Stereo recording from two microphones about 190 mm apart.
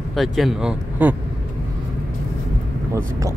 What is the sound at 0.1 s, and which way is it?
Speech, centre (ahead or behind).